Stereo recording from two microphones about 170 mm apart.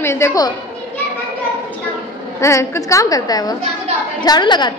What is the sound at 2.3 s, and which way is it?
A woman's voice, 15° left (ahead or behind).